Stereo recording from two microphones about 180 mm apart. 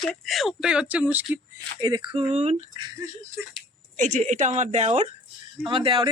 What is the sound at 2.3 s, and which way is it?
Speech, 40° right (ahead or behind).